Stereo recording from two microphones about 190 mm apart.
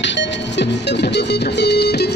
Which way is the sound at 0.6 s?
65° left (ahead or behind).